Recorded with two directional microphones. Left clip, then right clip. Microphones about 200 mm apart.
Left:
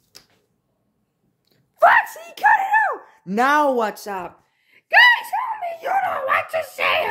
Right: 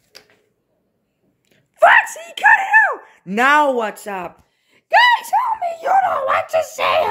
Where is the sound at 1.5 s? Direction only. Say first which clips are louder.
Right 3 dB; centre (ahead or behind).